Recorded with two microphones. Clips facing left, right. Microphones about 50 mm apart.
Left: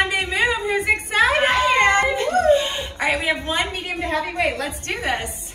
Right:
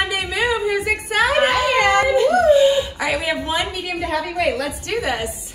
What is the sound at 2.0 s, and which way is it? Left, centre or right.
Cat, left.